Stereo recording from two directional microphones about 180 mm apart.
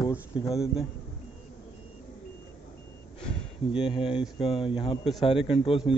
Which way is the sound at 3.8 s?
30° left (ahead or behind).